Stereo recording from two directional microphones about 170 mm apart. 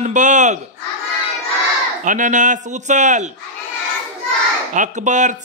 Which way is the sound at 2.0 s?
50° right (ahead or behind).